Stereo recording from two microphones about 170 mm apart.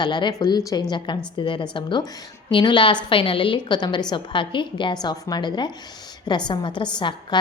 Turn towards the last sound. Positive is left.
turn(degrees=25)  # may be behind; listen again after turning